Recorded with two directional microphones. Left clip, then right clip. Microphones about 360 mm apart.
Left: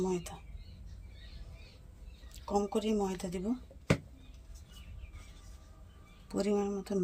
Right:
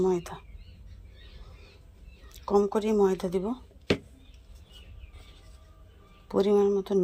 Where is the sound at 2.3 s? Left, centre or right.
Centre.